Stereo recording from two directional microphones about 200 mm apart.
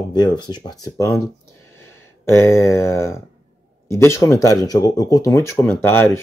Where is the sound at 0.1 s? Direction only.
20° left (ahead or behind).